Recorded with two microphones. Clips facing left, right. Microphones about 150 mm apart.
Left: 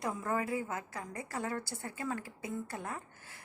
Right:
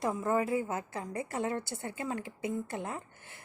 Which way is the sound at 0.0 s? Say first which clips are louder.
Right 5 dB; 25° right (ahead or behind).